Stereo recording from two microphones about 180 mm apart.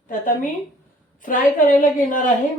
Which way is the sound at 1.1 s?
50° left (ahead or behind).